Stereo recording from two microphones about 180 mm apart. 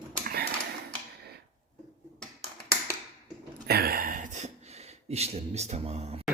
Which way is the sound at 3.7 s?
55° right (ahead or behind).